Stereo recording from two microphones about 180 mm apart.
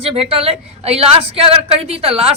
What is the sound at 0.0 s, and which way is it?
A woman's voice, 30° right (ahead or behind).